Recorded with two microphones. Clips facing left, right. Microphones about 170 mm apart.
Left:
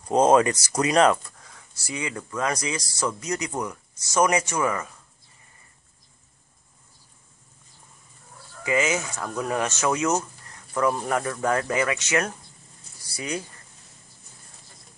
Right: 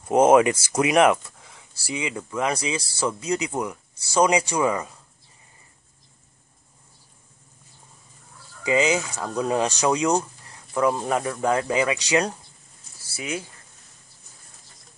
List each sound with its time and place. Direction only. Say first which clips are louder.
0.0 s speech: right 2 dB; 10° right (ahead or behind)
1.7 s a sound: right 3 dB; 30° right (ahead or behind)
2.0 s speech: right 2 dB; 15° right (ahead or behind)
2.5 s speech: right 2 dB; 25° right (ahead or behind)
3.4 s speech: right 2 dB; 10° right (ahead or behind)
8.6 s speech: right 3 dB; 15° right (ahead or behind)
13.1 s speech: even; 5° right (ahead or behind)